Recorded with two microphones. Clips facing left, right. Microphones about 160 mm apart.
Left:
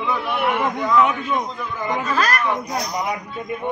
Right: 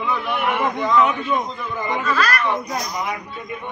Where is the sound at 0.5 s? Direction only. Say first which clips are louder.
Right 1 dB; 10° left (ahead or behind).